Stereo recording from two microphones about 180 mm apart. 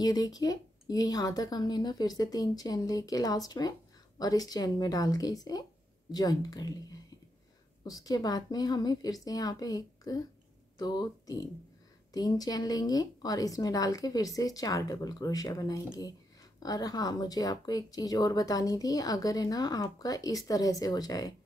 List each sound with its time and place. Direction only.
0.0 s a woman's voice: 20° left (ahead or behind)